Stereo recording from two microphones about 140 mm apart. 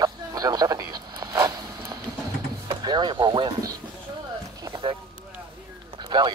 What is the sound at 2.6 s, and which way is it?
Music, 30° right (ahead or behind).